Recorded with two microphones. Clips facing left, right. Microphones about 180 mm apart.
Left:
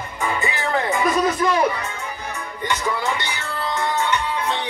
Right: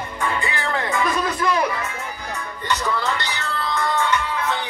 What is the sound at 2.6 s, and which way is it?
Music, 15° left (ahead or behind).